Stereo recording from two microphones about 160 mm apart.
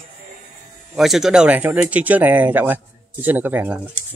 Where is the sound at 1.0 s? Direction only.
Centre (ahead or behind).